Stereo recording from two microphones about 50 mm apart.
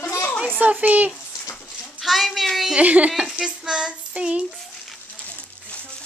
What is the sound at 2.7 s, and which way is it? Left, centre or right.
Speech, right.